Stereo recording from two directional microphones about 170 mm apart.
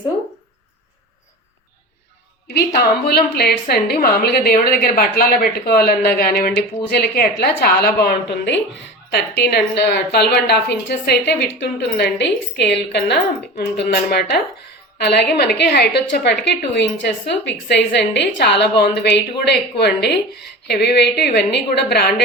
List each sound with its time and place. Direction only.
2.5 s a woman's voice: 70° left (ahead or behind)